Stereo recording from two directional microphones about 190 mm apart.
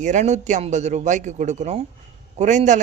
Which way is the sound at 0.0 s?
40° right (ahead or behind).